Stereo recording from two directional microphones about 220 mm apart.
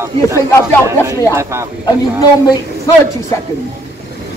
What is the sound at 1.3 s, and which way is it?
Speech, 10° right (ahead or behind).